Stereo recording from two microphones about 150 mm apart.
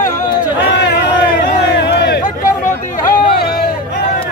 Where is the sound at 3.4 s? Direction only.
90° left.